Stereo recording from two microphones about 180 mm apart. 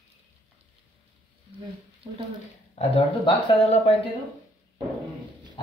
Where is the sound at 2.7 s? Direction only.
30° left (ahead or behind).